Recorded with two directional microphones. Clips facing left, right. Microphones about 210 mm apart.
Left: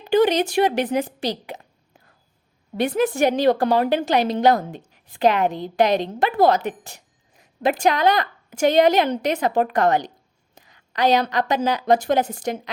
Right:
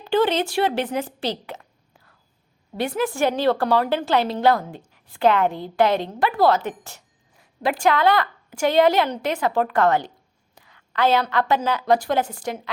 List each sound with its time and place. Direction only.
0.0 s a woman's voice: 15° left (ahead or behind)
2.7 s a woman's voice: 20° left (ahead or behind)